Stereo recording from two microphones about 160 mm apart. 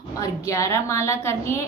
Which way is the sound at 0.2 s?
20° left (ahead or behind).